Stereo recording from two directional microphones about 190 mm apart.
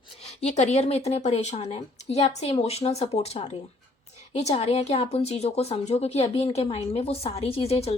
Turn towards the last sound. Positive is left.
turn(degrees=30)  # may be behind; listen again after turning